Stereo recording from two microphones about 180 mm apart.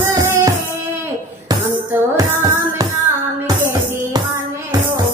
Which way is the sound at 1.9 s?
20° right (ahead or behind).